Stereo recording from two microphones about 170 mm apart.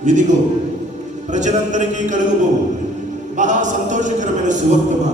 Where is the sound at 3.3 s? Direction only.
45° right (ahead or behind).